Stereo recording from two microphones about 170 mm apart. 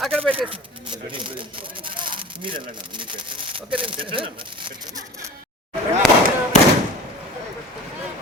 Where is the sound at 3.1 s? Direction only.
30° right (ahead or behind).